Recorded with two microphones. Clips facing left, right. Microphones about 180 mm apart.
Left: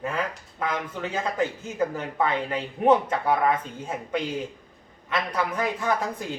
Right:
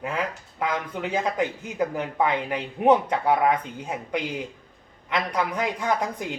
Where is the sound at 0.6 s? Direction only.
15° right (ahead or behind).